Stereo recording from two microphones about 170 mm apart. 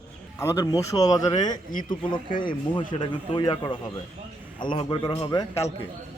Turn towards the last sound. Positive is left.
turn(degrees=20)  # may be behind; listen again after turning